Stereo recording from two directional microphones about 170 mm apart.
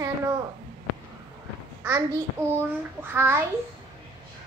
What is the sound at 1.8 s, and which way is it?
A child's voice, 15° right (ahead or behind).